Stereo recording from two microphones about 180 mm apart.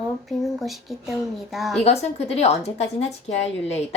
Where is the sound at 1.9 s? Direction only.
35° left (ahead or behind).